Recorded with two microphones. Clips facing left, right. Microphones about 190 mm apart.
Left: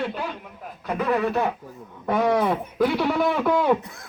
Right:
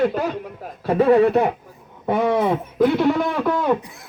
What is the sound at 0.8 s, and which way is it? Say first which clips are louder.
Speech: right 9 dB; 30° right (ahead or behind).